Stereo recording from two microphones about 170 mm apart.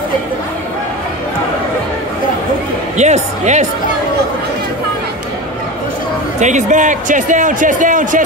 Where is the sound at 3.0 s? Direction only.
45° right (ahead or behind).